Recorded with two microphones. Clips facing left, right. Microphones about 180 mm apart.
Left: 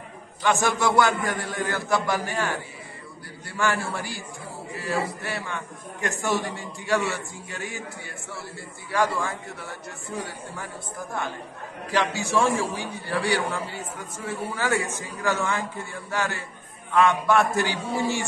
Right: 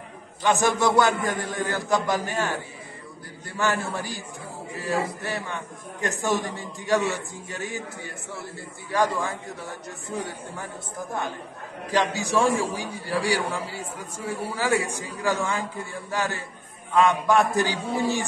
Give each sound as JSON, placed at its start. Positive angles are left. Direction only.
{"t": 0.4, "sound": "a man's voice", "side_deg": -20}
{"t": 3.5, "sound": "a man's voice", "side_deg": -15}
{"t": 12.0, "sound": "a man's voice", "side_deg": -15}